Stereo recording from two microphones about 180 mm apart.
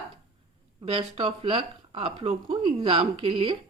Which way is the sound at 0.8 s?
30° right (ahead or behind).